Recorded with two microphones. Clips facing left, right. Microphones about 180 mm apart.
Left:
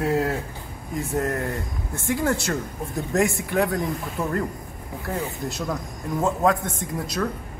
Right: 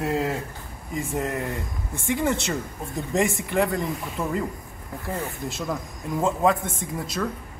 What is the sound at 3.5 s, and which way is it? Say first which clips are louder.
Speech: left 1 dB; centre (ahead or behind).